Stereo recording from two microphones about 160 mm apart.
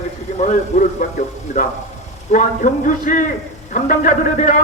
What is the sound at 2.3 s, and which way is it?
A man's voice, 50° left (ahead or behind).